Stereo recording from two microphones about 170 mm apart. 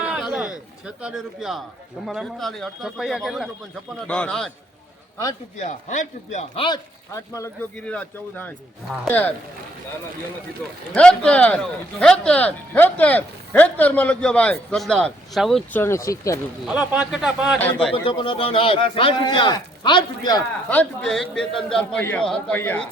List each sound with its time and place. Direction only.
0.0 s a sound: 5° right (ahead or behind)
2.0 s a man's voice: centre (ahead or behind)
5.5 s a man's voice: 45° left (ahead or behind)
6.6 s speech: 20° left (ahead or behind)
7.8 s speech: 5° left (ahead or behind)
10.9 s speech: 5° left (ahead or behind)
15.8 s speech: 15° left (ahead or behind)
16.6 s a man's voice: 5° right (ahead or behind)
17.9 s speech: 30° left (ahead or behind)
20.7 s a man's voice: 5° left (ahead or behind)